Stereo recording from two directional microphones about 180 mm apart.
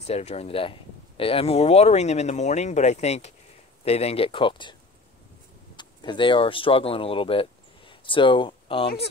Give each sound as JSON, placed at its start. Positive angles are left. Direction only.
{"t": 0.0, "sound": "speech", "side_deg": 35}
{"t": 5.8, "sound": "speech", "side_deg": 25}